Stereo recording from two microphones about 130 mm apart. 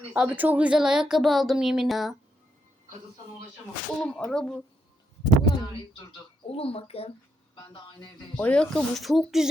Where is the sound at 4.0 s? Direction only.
5° left (ahead or behind).